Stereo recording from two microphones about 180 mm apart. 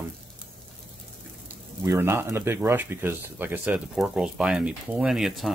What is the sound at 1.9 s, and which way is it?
Speech, 15° right (ahead or behind).